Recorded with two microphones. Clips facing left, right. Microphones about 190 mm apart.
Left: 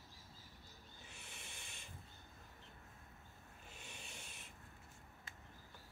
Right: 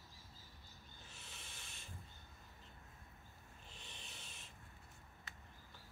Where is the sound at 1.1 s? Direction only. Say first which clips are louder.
Left 2 dB; 15° left (ahead or behind).